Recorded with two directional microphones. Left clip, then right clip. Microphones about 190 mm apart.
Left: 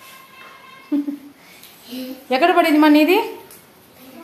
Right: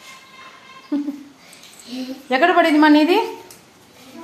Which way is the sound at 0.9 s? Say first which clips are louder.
Left 2 dB; centre (ahead or behind).